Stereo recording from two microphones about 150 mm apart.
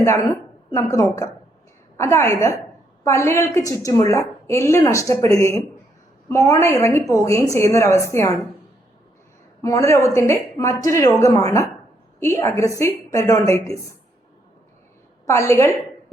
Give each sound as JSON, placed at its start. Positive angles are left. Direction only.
{"t": 0.0, "sound": "a woman's voice", "side_deg": 20}
{"t": 9.6, "sound": "a woman's voice", "side_deg": 20}
{"t": 15.3, "sound": "a woman's voice", "side_deg": 20}